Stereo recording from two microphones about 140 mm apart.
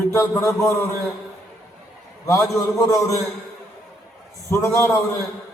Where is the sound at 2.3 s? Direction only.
20° left (ahead or behind).